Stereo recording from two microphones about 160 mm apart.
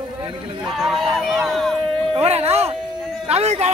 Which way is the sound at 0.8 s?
Centre (ahead or behind).